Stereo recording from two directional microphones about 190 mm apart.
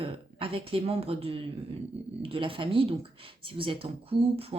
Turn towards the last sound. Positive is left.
turn(degrees=-60)  # may be behind; listen again after turning